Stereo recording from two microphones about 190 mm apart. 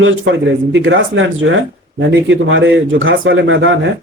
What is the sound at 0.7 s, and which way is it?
Speech, 80° right.